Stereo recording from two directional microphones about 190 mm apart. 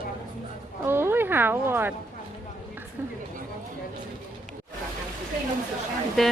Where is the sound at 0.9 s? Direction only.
10° right (ahead or behind).